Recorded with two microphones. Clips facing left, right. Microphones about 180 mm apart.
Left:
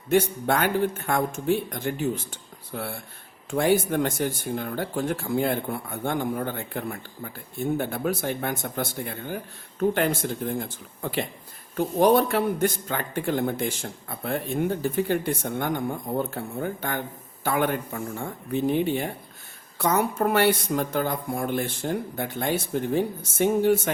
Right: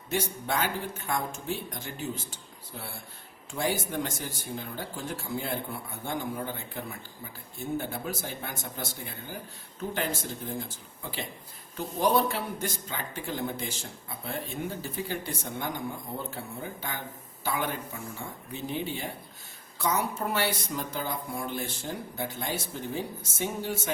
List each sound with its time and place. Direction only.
0.1 s speech: 55° left (ahead or behind)